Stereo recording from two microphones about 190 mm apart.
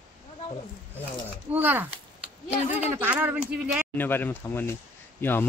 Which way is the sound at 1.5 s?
10° right (ahead or behind).